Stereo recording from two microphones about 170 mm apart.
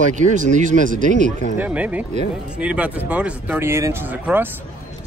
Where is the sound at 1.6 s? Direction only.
10° right (ahead or behind).